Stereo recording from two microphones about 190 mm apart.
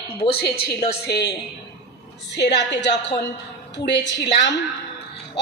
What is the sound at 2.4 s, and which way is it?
A woman's voice, 65° left (ahead or behind).